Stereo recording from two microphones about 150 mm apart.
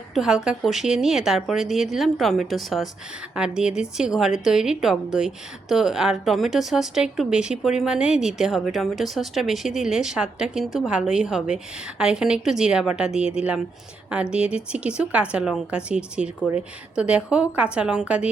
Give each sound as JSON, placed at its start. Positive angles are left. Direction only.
{"t": 0.1, "sound": "a woman's voice", "side_deg": -5}